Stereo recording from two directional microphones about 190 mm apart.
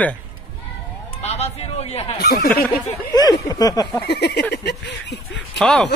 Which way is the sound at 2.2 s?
55° left (ahead or behind).